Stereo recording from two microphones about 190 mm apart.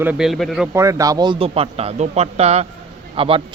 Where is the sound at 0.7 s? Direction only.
15° right (ahead or behind).